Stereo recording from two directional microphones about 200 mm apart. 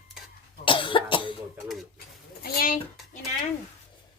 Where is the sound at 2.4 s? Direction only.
50° left (ahead or behind).